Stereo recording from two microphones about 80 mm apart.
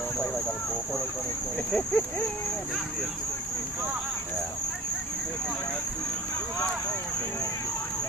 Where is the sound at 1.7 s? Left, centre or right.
Centre.